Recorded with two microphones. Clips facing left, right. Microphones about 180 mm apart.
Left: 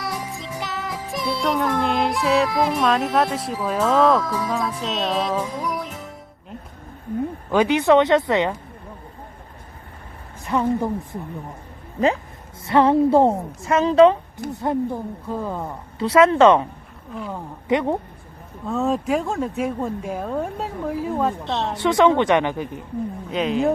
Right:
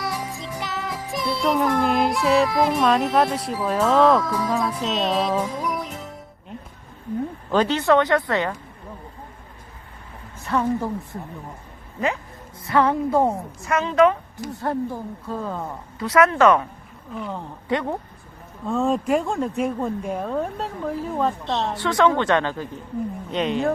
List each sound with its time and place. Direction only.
0.0 s music: centre (ahead or behind)
1.1 s speech: centre (ahead or behind)
7.5 s a woman's voice: 15° left (ahead or behind)
10.4 s a woman's voice: 15° left (ahead or behind)
12.6 s a woman's voice: 25° left (ahead or behind)
14.5 s a woman's voice: 20° left (ahead or behind)
16.0 s a woman's voice: 30° left (ahead or behind)
17.2 s speech: centre (ahead or behind)
17.7 s speech: 20° left (ahead or behind)
18.6 s speech: centre (ahead or behind)
21.8 s a woman's voice: 20° left (ahead or behind)
23.3 s speech: centre (ahead or behind)